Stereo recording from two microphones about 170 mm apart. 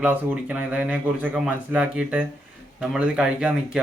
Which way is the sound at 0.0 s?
10° right (ahead or behind).